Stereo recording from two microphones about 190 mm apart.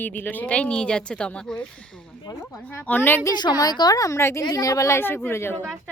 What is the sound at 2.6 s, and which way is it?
A woman's voice, 10° left (ahead or behind).